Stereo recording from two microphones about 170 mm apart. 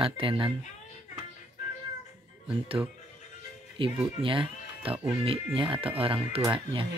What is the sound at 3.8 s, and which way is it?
Speech, 30° right (ahead or behind).